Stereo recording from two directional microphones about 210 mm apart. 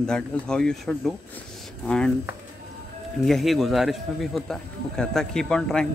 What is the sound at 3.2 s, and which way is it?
A man's voice, centre (ahead or behind).